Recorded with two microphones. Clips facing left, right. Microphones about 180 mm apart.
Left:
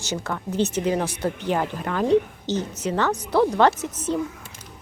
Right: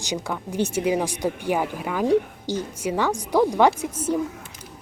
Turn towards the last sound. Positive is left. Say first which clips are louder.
# right 1 dB
turn(degrees=-10)  # may be behind; listen again after turning